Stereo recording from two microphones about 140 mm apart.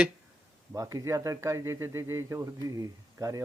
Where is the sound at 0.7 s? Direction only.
25° right (ahead or behind).